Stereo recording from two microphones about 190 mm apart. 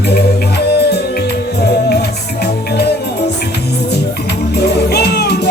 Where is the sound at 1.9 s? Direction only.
60° left (ahead or behind).